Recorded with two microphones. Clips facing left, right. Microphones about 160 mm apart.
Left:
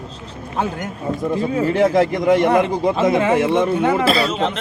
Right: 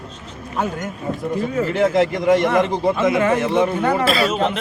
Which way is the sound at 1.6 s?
35° left (ahead or behind).